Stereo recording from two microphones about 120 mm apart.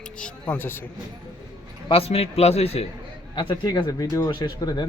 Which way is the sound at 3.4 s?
35° left (ahead or behind).